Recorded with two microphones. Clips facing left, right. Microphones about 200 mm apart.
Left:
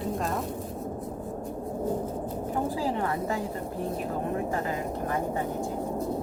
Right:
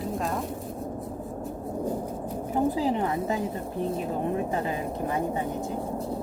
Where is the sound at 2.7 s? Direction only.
20° right (ahead or behind).